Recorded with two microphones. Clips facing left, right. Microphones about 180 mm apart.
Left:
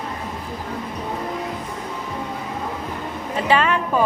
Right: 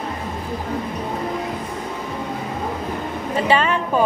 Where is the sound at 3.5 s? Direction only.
30° right (ahead or behind).